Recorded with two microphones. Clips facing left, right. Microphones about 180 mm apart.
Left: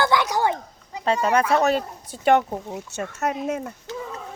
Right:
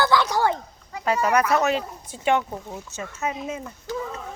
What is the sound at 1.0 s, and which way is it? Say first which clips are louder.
Speech: left 1 dB; 30° left (ahead or behind).